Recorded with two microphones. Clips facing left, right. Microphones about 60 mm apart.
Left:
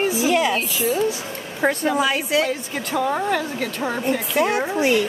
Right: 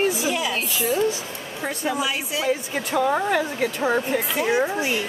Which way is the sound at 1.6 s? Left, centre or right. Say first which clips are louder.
Left 9 dB; left.